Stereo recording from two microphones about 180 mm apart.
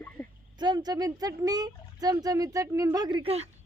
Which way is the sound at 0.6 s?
25° right (ahead or behind).